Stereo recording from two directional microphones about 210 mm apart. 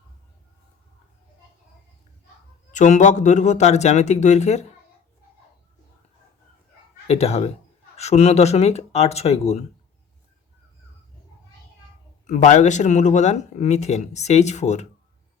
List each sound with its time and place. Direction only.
2.7 s speech: 35° left (ahead or behind)
7.1 s speech: 30° left (ahead or behind)
12.2 s speech: 35° left (ahead or behind)